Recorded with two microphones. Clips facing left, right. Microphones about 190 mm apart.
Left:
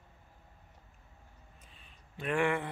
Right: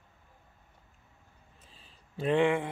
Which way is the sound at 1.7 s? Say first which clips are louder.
Right 1 dB; 30° right (ahead or behind).